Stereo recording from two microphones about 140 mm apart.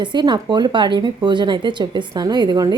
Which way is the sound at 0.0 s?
35° right (ahead or behind).